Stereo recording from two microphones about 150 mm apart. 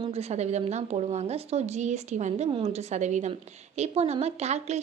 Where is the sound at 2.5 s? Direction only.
40° right (ahead or behind).